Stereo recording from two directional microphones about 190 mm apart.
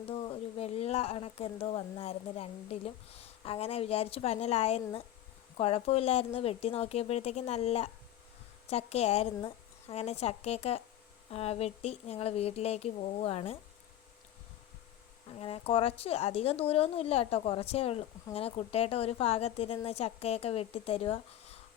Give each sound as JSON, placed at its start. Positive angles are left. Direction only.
{"t": 0.0, "sound": "speech", "side_deg": 30}
{"t": 15.3, "sound": "speech", "side_deg": 30}